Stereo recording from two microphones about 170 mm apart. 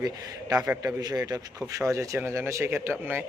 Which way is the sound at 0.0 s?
20° right (ahead or behind).